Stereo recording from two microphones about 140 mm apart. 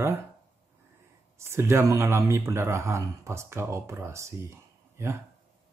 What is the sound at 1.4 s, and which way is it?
Speech, 20° right (ahead or behind).